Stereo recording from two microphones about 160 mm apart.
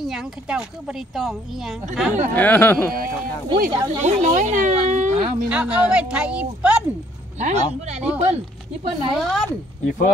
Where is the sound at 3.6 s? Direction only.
50° right (ahead or behind).